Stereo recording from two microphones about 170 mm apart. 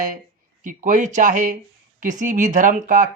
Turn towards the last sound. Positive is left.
turn(degrees=-50)  # may be behind; listen again after turning